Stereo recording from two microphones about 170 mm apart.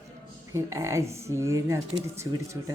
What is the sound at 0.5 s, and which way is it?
A man's voice, 15° right (ahead or behind).